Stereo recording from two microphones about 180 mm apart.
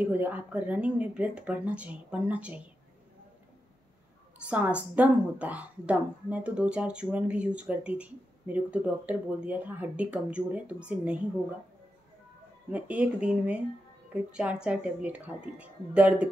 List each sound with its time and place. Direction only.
0.0 s speech: 10° right (ahead or behind)
4.4 s speech: 5° right (ahead or behind)
12.7 s speech: 5° right (ahead or behind)